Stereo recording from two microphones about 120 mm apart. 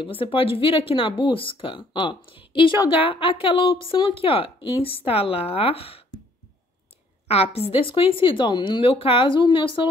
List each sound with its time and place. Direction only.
0.0 s speech: 50° left (ahead or behind)
7.2 s speech: 55° left (ahead or behind)